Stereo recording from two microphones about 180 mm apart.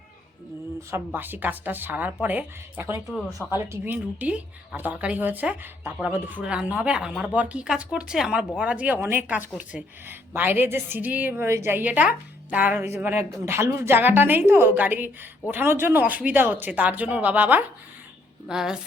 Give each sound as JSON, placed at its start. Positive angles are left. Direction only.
{"t": 0.9, "sound": "a woman's voice", "side_deg": -10}
{"t": 3.1, "sound": "a woman's voice", "side_deg": 0}